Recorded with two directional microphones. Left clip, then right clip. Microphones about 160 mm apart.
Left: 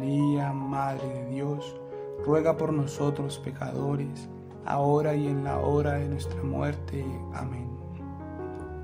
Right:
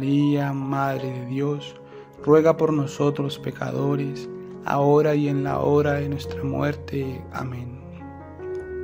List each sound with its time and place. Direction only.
0.0 s music: 25° right (ahead or behind)
2.2 s speech: 25° right (ahead or behind)